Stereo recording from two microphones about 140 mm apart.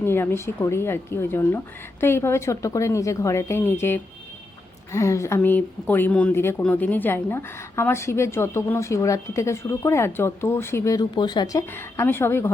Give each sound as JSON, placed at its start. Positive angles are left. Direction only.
{"t": 0.0, "sound": "a woman's voice", "side_deg": 15}